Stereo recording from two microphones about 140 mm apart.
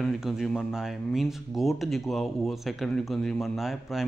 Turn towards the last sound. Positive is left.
turn(degrees=0)  # may be behind; listen again after turning